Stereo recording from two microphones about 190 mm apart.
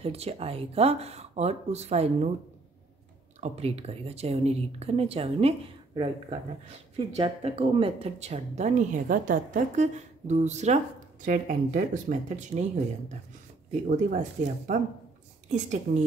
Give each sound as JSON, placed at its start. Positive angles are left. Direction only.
{"t": 0.0, "sound": "speech", "side_deg": -30}
{"t": 3.3, "sound": "speech", "side_deg": -35}
{"t": 7.0, "sound": "speech", "side_deg": -30}
{"t": 13.7, "sound": "speech", "side_deg": -40}